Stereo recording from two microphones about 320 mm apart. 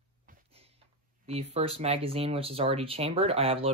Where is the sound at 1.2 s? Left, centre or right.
Centre.